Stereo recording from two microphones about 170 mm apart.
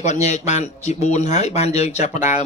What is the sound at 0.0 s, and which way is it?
A man's voice, 45° left (ahead or behind).